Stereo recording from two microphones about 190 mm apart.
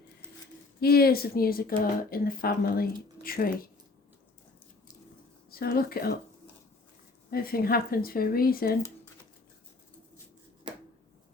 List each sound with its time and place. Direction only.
0.8 s speech: 55° left (ahead or behind)
5.5 s speech: 50° left (ahead or behind)
7.3 s speech: 50° left (ahead or behind)